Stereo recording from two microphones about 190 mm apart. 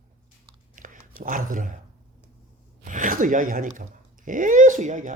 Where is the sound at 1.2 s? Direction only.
45° right (ahead or behind).